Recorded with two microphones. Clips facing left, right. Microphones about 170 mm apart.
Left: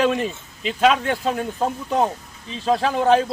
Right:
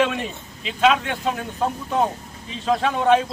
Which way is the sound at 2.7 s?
35° left (ahead or behind).